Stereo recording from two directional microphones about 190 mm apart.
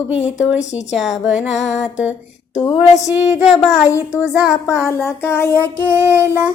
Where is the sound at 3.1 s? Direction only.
5° right (ahead or behind).